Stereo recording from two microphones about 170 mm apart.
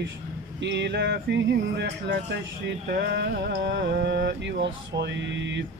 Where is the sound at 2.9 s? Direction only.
70° right (ahead or behind); by 5.6 s 90° right.